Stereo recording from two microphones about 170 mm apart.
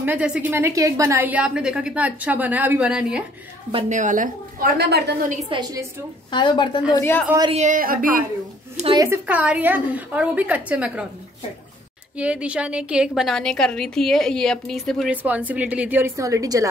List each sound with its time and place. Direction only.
0.0 s a woman's voice: 10° right (ahead or behind)
3.9 s a woman's voice: 50° right (ahead or behind)
4.7 s a woman's voice: 75° right (ahead or behind)
5.5 s a woman's voice: 20° right (ahead or behind)
6.3 s a woman's voice: 25° left (ahead or behind)
6.9 s a woman's voice: 15° left (ahead or behind)
7.5 s a woman's voice: 50° right (ahead or behind)
8.9 s a woman's voice: 20° right (ahead or behind)
9.2 s a woman's voice: 5° right (ahead or behind)
12.2 s a woman's voice: 5° right (ahead or behind)
15.2 s a woman's voice: 10° right (ahead or behind)